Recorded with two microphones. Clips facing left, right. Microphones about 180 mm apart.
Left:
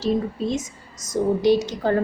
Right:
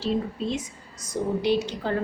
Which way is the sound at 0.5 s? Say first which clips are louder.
Left 4 dB; 45° left (ahead or behind).